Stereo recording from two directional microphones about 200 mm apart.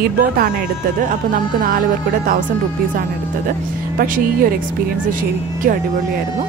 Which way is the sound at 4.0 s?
45° right (ahead or behind).